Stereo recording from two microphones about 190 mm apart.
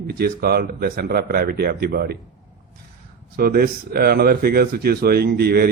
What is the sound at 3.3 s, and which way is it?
A man's voice, 50° right (ahead or behind).